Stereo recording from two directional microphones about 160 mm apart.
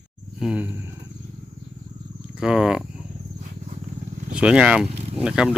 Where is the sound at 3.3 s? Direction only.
50° right (ahead or behind).